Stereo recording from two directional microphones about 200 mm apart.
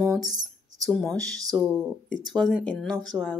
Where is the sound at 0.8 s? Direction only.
Centre (ahead or behind).